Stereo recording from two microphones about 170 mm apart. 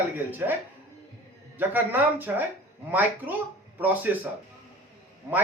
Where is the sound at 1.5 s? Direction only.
10° right (ahead or behind).